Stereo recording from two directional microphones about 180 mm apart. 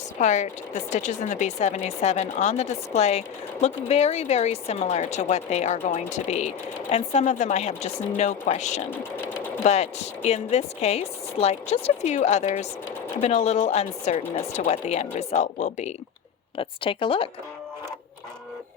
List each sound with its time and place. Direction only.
0.2 s speech: 40° left (ahead or behind)
16.6 s a woman's voice: 30° left (ahead or behind)